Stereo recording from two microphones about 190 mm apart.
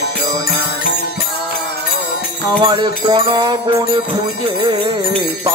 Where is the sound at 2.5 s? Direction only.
25° right (ahead or behind).